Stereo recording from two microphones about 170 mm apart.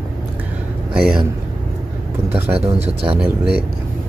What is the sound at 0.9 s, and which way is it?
Speech, 5° right (ahead or behind).